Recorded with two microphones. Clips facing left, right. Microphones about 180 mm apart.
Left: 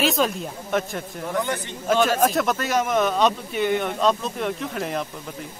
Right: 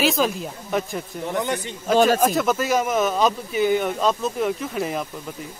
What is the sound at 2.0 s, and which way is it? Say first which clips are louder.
Speech: right 2 dB; centre (ahead or behind).